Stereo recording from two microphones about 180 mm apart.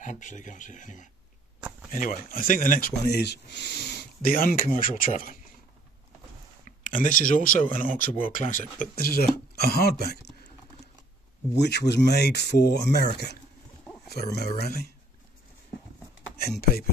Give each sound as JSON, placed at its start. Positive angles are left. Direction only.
{"t": 0.0, "sound": "speech", "side_deg": 45}
{"t": 6.8, "sound": "speech", "side_deg": 45}
{"t": 11.5, "sound": "speech", "side_deg": 70}
{"t": 16.3, "sound": "speech", "side_deg": 60}